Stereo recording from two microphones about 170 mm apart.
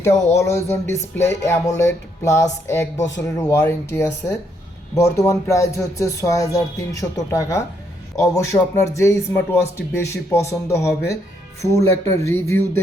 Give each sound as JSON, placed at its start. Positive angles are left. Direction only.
{"t": 0.0, "sound": "speech", "side_deg": 15}